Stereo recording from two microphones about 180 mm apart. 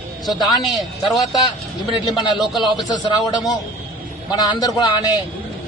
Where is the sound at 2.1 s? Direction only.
25° left (ahead or behind).